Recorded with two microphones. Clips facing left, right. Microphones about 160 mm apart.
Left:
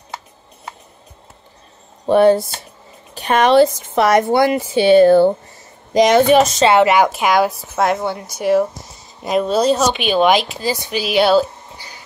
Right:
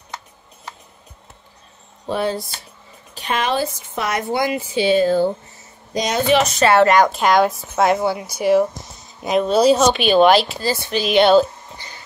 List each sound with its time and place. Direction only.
2.0 s speech: 60° left (ahead or behind)
3.3 s a woman's voice: 70° left (ahead or behind)
4.2 s speech: 55° left (ahead or behind)
5.9 s a woman's voice: 85° left
6.5 s speech: 20° left (ahead or behind); by 9.9 s centre (ahead or behind)
9.9 s speech: 10° left (ahead or behind)